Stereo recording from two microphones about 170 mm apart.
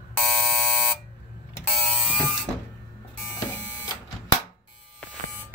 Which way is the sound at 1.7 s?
5° left (ahead or behind).